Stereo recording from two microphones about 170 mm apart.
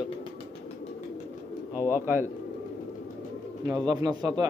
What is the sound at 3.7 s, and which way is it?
Speech, 20° right (ahead or behind).